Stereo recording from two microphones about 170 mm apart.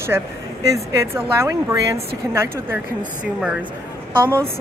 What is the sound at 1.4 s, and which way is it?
Speech, 15° right (ahead or behind).